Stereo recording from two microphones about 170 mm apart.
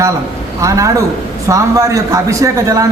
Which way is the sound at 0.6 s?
20° right (ahead or behind).